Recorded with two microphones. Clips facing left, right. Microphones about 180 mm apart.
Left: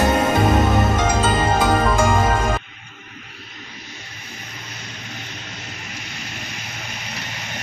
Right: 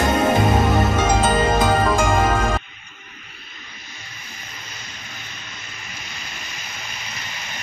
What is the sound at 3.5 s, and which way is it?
Vehicle, 70° left (ahead or behind).